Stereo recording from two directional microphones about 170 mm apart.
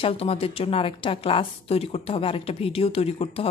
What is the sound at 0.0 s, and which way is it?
Speech, 35° left (ahead or behind).